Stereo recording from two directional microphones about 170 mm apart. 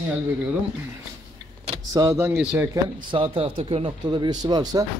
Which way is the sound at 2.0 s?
15° right (ahead or behind).